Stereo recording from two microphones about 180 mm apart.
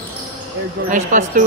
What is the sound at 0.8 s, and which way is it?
Speech, 45° right (ahead or behind).